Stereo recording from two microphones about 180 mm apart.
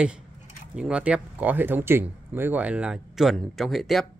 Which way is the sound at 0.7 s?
5° right (ahead or behind).